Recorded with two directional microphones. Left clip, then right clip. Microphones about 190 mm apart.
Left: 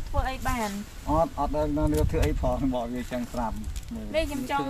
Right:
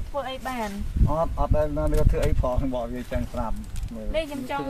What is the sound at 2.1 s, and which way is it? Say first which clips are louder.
Speech: right 1 dB; 20° right (ahead or behind).